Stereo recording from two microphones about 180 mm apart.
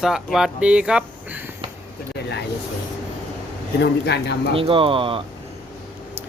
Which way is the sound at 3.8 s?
70° left (ahead or behind).